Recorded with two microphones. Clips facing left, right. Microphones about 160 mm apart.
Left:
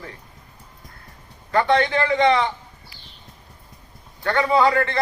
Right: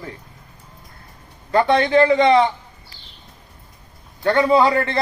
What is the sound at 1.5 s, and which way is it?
Speech, 30° right (ahead or behind).